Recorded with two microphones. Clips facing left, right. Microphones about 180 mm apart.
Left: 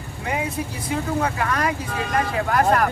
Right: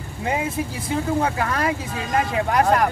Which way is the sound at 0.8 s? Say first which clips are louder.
Right 1 dB; 25° right (ahead or behind).